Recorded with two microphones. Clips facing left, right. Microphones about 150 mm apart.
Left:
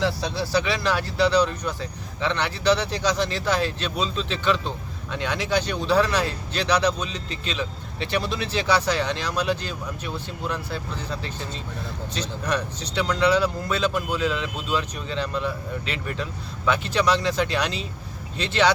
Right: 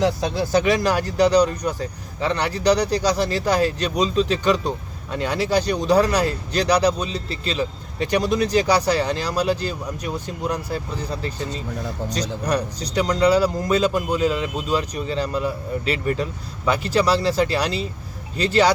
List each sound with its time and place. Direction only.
0.0 s speech: 50° right (ahead or behind)